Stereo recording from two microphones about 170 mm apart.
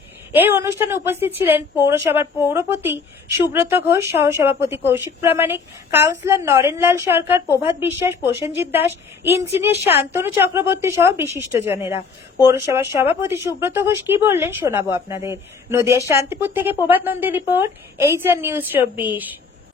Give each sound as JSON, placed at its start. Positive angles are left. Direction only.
{"t": 0.3, "sound": "a woman's voice", "side_deg": -10}